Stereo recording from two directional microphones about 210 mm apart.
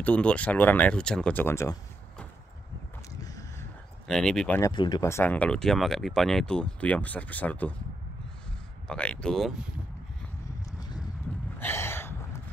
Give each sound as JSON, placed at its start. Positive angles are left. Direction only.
{"t": 0.0, "sound": "speech", "side_deg": 5}
{"t": 3.2, "sound": "a sound", "side_deg": 15}
{"t": 4.1, "sound": "speech", "side_deg": 5}
{"t": 4.6, "sound": "speech", "side_deg": 20}
{"t": 8.8, "sound": "speech", "side_deg": 5}
{"t": 11.6, "sound": "gasp", "side_deg": 10}